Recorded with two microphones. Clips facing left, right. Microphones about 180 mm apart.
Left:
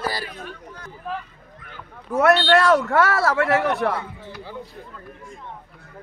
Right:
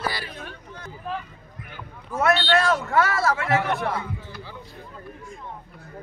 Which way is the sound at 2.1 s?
65° left (ahead or behind).